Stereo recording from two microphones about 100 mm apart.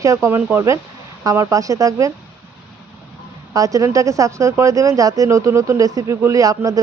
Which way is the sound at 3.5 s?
35° right (ahead or behind).